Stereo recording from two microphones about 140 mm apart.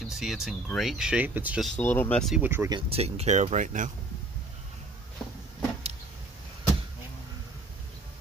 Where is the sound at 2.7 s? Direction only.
40° right (ahead or behind); by 3.9 s 65° right (ahead or behind).